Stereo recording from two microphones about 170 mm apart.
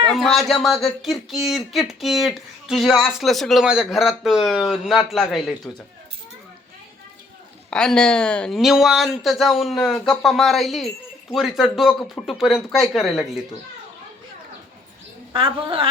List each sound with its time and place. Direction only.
0.1 s speech: centre (ahead or behind)
7.7 s speech: 5° left (ahead or behind)
15.3 s a woman's voice: 30° right (ahead or behind)